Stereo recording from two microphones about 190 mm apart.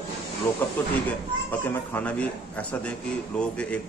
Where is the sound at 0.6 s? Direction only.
10° left (ahead or behind).